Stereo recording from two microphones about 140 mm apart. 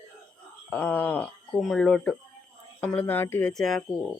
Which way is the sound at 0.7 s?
15° left (ahead or behind).